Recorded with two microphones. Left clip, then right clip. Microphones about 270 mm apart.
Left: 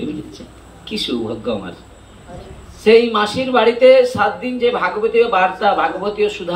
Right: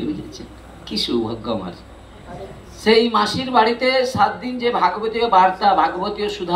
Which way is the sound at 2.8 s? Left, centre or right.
Centre.